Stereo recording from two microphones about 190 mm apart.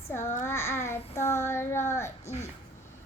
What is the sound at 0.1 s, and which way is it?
Child singing, 15° left (ahead or behind).